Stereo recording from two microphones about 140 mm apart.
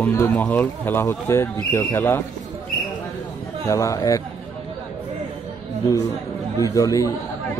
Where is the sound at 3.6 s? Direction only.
20° left (ahead or behind).